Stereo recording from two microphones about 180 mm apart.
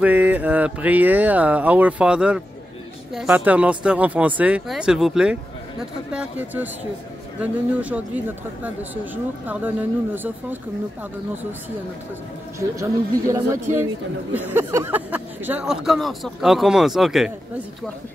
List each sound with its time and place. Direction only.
0.0 s speech: 10° right (ahead or behind)
12.5 s speech: 15° right (ahead or behind); by 17.3 s centre (ahead or behind)